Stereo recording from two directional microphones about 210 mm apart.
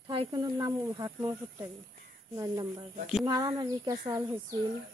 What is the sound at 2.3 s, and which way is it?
Speech, 15° right (ahead or behind).